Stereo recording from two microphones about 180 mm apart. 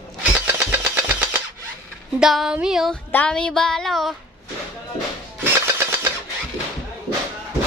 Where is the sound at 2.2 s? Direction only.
Centre (ahead or behind).